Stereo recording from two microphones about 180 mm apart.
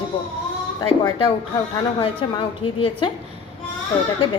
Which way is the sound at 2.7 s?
30° left (ahead or behind).